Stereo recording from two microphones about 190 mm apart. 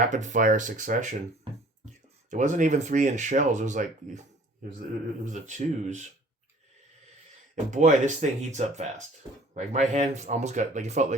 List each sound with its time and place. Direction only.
0.1 s speech: 40° right (ahead or behind)
2.3 s speech: 40° right (ahead or behind)
5.2 s speech: 40° right (ahead or behind)
7.7 s speech: 40° right (ahead or behind)